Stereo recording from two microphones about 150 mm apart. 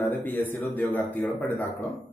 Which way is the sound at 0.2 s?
10° left (ahead or behind).